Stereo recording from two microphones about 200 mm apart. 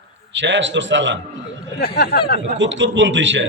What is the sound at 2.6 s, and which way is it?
Speech, 65° right (ahead or behind).